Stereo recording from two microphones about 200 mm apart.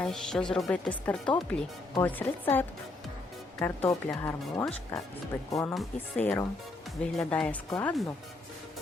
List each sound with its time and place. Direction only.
0.0 s speech: 5° left (ahead or behind)
5.7 s speech: centre (ahead or behind)